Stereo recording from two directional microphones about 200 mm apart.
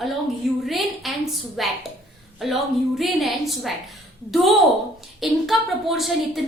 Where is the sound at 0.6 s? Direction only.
Centre (ahead or behind).